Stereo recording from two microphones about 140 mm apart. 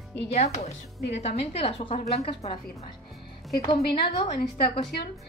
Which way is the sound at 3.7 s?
50° left (ahead or behind).